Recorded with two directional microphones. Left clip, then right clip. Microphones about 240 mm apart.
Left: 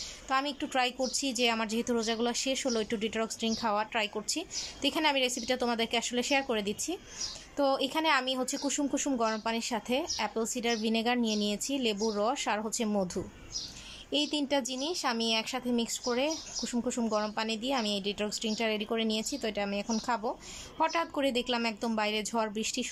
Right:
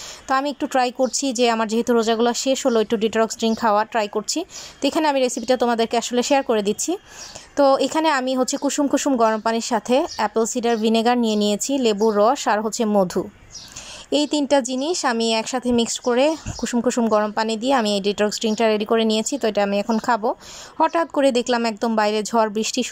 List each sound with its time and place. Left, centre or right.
0.3 s speech: centre